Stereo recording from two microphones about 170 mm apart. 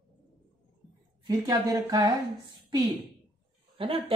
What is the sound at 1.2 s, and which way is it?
Speech, 20° right (ahead or behind).